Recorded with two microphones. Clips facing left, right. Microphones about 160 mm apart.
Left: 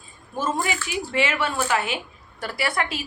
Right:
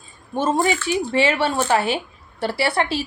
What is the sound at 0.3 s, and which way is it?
A woman's voice, 30° right (ahead or behind).